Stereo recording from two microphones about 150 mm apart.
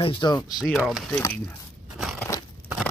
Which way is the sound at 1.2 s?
15° left (ahead or behind).